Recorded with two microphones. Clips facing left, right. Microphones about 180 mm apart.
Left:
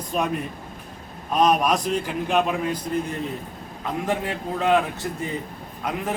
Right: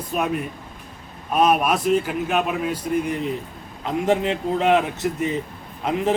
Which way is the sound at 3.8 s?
20° right (ahead or behind).